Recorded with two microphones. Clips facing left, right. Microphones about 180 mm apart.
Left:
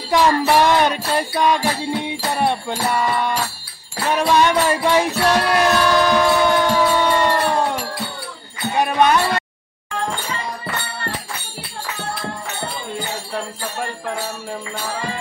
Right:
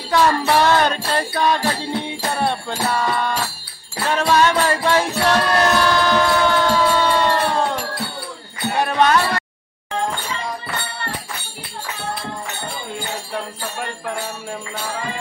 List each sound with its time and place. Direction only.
0.1 s music: 15° left (ahead or behind)
8.7 s music: 15° left (ahead or behind)